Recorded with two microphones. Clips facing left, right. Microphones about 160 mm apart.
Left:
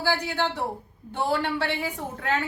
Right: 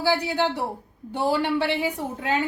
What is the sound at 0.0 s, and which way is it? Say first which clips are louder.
A woman's voice: right 3 dB; 15° right (ahead or behind).